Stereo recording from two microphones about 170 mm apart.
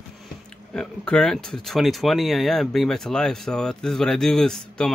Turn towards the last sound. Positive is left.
turn(degrees=5)  # may be behind; listen again after turning